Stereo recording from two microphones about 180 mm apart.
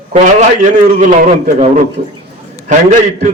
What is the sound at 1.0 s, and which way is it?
A man's voice, 45° right (ahead or behind).